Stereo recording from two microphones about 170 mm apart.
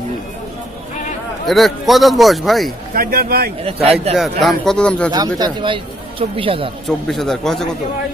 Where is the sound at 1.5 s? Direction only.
Centre (ahead or behind).